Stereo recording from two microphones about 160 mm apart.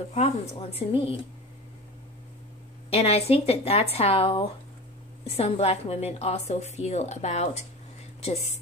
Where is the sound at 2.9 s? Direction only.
40° left (ahead or behind).